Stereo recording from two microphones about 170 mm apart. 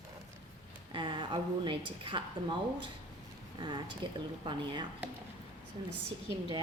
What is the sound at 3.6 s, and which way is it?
Speech, 25° right (ahead or behind).